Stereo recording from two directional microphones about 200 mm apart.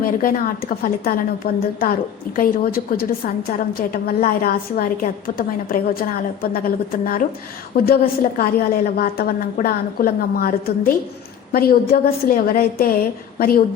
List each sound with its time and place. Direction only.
0.0 s a woman's voice: 45° left (ahead or behind)